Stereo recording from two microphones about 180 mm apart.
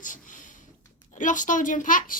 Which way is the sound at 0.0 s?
45° left (ahead or behind).